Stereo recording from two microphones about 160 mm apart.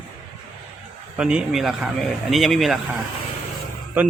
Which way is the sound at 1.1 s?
5° right (ahead or behind).